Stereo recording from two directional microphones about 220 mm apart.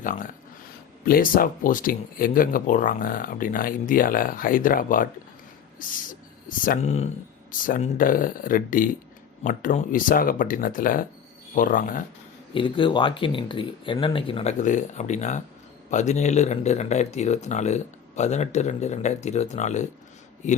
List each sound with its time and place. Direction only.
0.0 s speech: 35° left (ahead or behind)
12.5 s speech: 20° left (ahead or behind)